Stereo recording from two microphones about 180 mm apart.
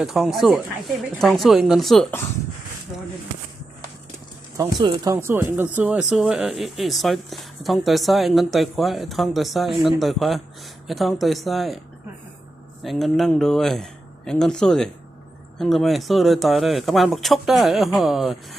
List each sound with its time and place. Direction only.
0.0 s speech: centre (ahead or behind)
4.5 s speech: 20° right (ahead or behind); by 11.8 s centre (ahead or behind)
12.8 s speech: centre (ahead or behind)